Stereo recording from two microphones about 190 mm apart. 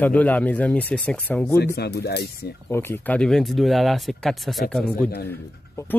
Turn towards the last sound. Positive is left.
turn(degrees=10)  # may be behind; listen again after turning